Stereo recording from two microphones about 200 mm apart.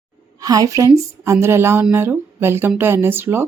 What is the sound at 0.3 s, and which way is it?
A woman's voice, 20° right (ahead or behind).